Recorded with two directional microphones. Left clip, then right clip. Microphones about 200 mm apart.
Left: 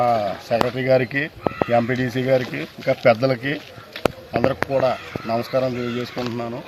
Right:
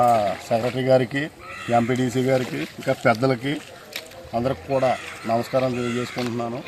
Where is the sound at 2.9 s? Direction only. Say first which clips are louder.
Left 3 dB; 20° left (ahead or behind).